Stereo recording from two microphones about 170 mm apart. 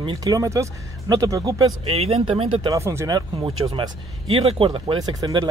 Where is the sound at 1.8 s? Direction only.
35° right (ahead or behind).